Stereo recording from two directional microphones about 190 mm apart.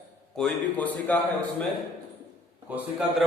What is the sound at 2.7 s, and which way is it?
Speech, 5° right (ahead or behind).